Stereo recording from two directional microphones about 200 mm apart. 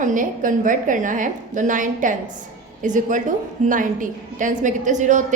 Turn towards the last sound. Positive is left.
turn(degrees=-40)  # may be behind; listen again after turning